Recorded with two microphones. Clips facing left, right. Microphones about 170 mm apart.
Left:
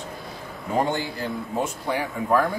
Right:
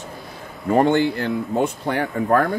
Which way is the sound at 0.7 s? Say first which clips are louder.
Right 8 dB; 65° right (ahead or behind).